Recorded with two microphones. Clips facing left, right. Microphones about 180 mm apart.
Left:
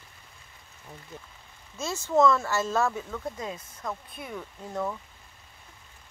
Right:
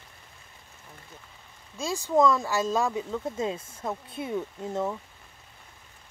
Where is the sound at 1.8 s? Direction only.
15° right (ahead or behind).